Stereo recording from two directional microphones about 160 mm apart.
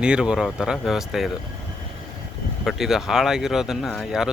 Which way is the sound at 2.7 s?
Centre (ahead or behind).